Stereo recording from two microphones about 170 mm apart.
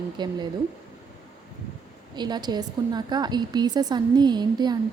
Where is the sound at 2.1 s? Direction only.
25° right (ahead or behind).